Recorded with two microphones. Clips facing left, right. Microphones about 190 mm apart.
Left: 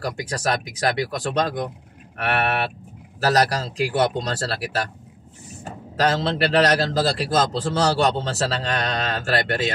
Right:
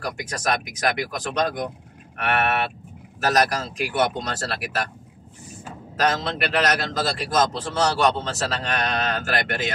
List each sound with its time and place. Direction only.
0.0 s a man's voice: 30° left (ahead or behind)